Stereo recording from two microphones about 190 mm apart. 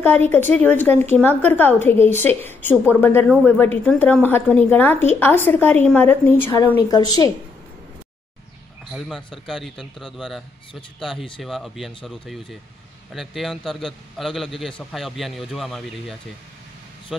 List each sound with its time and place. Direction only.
0.0 s a woman's voice: 10° left (ahead or behind)
8.9 s a man's voice: centre (ahead or behind)